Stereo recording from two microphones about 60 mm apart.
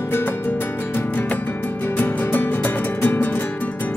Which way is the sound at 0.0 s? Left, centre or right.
Left.